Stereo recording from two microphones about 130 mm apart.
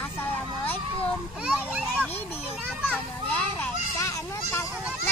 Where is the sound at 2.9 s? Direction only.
15° left (ahead or behind).